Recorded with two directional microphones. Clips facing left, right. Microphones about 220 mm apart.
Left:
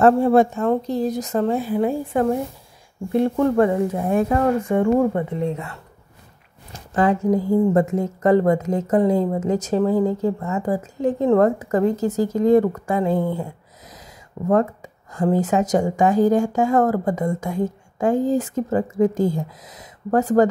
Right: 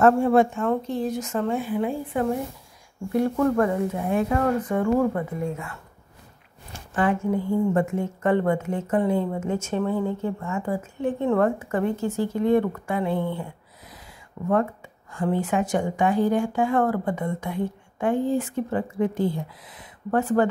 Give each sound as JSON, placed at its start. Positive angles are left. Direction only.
{"t": 0.0, "sound": "speech", "side_deg": 35}
{"t": 3.1, "sound": "speech", "side_deg": 25}
{"t": 4.4, "sound": "speech", "side_deg": 25}
{"t": 6.7, "sound": "speech", "side_deg": 35}